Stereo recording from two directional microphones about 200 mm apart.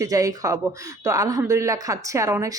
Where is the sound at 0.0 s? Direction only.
15° right (ahead or behind).